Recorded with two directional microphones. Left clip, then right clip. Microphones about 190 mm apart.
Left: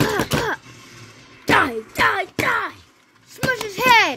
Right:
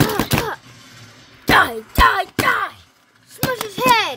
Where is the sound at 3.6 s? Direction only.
15° left (ahead or behind).